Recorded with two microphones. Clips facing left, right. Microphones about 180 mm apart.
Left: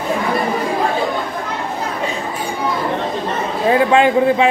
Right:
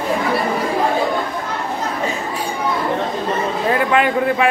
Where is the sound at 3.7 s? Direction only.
25° left (ahead or behind).